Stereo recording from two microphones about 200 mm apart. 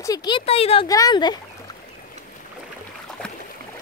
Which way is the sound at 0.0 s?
20° left (ahead or behind).